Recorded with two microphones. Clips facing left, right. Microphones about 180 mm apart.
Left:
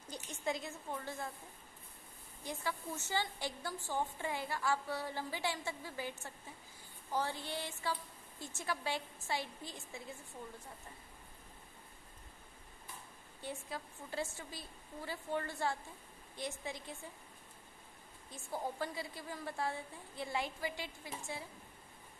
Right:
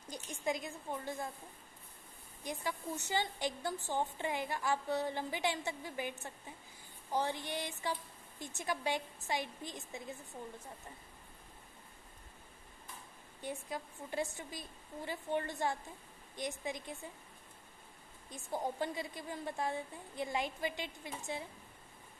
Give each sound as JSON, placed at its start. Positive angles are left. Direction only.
{"t": 0.1, "sound": "a sound", "side_deg": -15}
{"t": 2.4, "sound": "a woman's voice", "side_deg": -15}
{"t": 13.4, "sound": "a woman's voice", "side_deg": -15}
{"t": 18.3, "sound": "a woman's voice", "side_deg": -20}